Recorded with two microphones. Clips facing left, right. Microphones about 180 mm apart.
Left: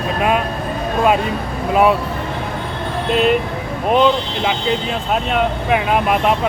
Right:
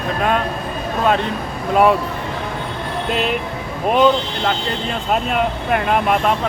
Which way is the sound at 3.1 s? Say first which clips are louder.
Left 6 dB; centre (ahead or behind).